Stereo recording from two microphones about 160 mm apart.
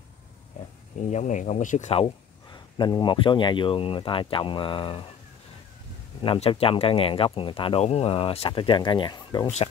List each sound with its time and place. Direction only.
0.9 s speech: 50° left (ahead or behind); by 5.0 s 30° left (ahead or behind)
6.2 s speech: 35° left (ahead or behind)